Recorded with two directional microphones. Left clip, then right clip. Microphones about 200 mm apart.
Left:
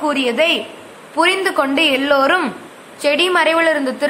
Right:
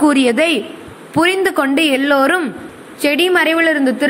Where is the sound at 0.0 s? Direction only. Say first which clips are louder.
Right 3 dB; 20° right (ahead or behind).